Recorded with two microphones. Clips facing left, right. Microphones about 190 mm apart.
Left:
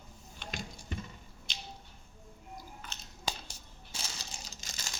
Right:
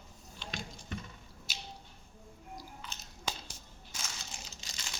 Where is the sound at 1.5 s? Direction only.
5° right (ahead or behind).